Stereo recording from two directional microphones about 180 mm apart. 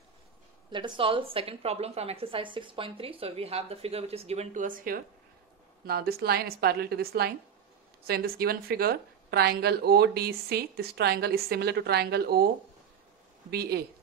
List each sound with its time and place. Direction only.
0.7 s a woman's voice: 25° right (ahead or behind); by 12.4 s 60° right (ahead or behind)
13.5 s a woman's voice: 65° right (ahead or behind)